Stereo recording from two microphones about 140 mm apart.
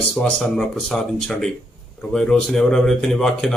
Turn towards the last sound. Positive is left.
turn(degrees=5)  # may be behind; listen again after turning